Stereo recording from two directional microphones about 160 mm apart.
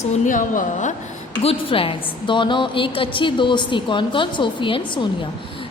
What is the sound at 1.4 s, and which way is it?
A woman's voice, 35° left (ahead or behind).